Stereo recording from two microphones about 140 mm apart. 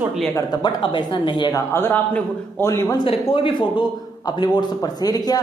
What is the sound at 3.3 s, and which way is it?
A man's voice, 35° left (ahead or behind).